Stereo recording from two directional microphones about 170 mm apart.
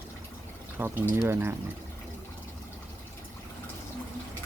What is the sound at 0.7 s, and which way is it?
Speech, 10° right (ahead or behind).